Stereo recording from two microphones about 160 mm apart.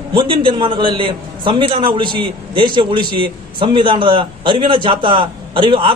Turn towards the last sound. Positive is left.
turn(degrees=-30)  # may be behind; listen again after turning